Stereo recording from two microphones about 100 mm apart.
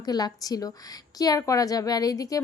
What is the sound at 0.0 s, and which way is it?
A woman's voice, 40° left (ahead or behind).